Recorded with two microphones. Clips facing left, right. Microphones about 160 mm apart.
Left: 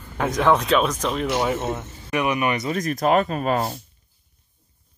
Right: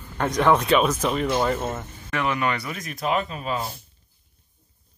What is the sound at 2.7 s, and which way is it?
Speech, 40° left (ahead or behind).